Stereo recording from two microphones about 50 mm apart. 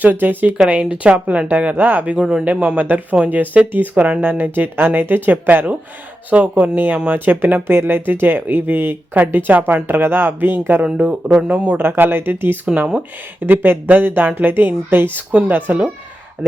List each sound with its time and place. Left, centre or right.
0.0 s speech: right
0.8 s speech: right
4.2 s speech: right
10.8 s speech: centre
11.8 s speech: right
12.6 s speech: right
13.4 s speech: right
15.3 s speech: right